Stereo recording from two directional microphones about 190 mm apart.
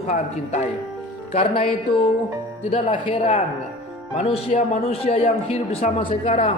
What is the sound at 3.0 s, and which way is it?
A man's voice, 30° left (ahead or behind).